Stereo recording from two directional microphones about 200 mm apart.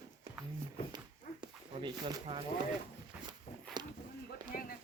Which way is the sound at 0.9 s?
20° right (ahead or behind).